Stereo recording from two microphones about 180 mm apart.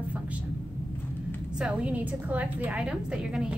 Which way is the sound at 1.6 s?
5° right (ahead or behind).